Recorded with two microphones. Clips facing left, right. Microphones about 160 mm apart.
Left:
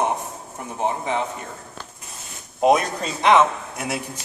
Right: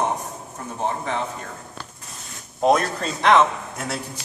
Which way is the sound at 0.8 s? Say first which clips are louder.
Left 2 dB; 15° left (ahead or behind).